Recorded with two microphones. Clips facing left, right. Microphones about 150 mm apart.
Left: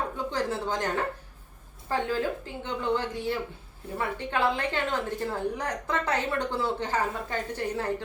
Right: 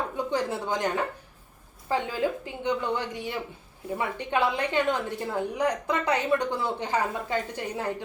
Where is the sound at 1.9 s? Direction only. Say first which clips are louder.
Right 1 dB; 15° right (ahead or behind).